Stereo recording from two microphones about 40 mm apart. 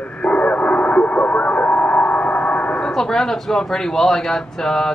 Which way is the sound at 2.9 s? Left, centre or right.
Centre.